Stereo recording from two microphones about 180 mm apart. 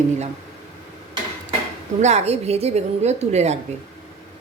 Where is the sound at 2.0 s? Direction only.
40° right (ahead or behind).